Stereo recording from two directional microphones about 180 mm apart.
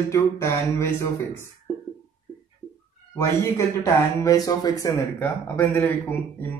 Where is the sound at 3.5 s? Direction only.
15° left (ahead or behind).